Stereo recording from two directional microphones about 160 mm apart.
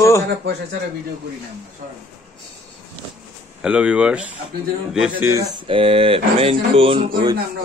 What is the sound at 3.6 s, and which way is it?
Speech, 10° right (ahead or behind).